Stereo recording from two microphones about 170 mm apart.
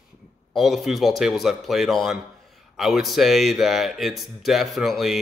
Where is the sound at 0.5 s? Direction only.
Centre (ahead or behind).